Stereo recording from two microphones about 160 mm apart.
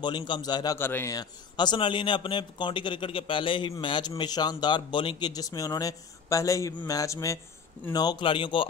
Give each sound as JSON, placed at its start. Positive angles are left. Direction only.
{"t": 0.0, "sound": "speech", "side_deg": 30}
{"t": 0.7, "sound": "a man's voice", "side_deg": 15}
{"t": 1.1, "sound": "speech", "side_deg": 30}